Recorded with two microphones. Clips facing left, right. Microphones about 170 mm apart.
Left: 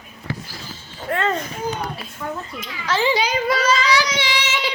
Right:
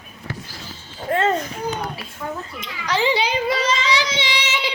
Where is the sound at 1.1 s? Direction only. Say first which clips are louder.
Right 2 dB; 30° right (ahead or behind).